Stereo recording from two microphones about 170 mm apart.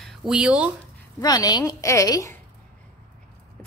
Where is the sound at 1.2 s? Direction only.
20° left (ahead or behind).